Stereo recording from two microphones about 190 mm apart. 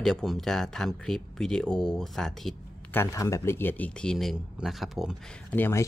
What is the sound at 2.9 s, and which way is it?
Speech, 15° left (ahead or behind).